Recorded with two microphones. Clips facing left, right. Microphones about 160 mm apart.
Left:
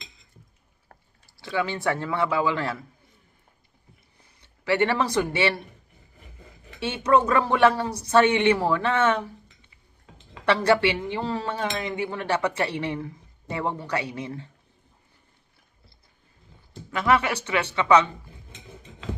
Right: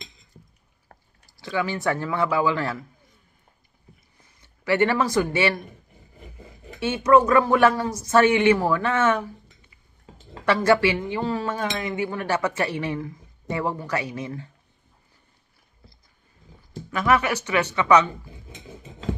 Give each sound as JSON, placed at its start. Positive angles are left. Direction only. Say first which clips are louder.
{"t": 1.4, "sound": "speech", "louder": "right 1 dB", "side_deg": 25}
{"t": 4.2, "sound": "speech", "louder": "right 2 dB", "side_deg": 30}
{"t": 6.7, "sound": "speech", "louder": "right 4 dB", "side_deg": 30}
{"t": 16.9, "sound": "speech", "louder": "right 1 dB", "side_deg": 30}